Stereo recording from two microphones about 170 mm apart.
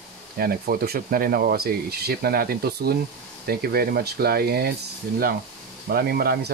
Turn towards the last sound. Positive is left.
turn(degrees=-65)  # may be behind; listen again after turning